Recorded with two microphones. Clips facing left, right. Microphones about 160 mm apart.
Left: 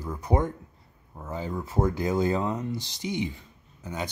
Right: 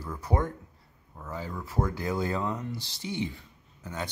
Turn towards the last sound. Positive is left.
turn(degrees=15)  # may be behind; listen again after turning